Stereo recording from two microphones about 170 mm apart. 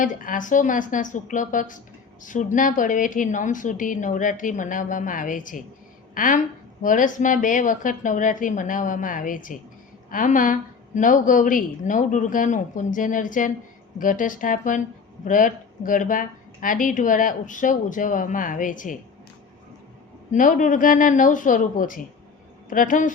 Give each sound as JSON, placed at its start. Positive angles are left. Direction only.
{"t": 0.0, "sound": "speech", "side_deg": 50}
{"t": 20.3, "sound": "speech", "side_deg": 50}